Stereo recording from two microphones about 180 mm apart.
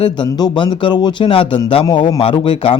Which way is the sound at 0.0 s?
25° left (ahead or behind).